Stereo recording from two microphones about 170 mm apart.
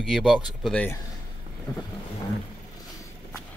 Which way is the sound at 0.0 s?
5° right (ahead or behind).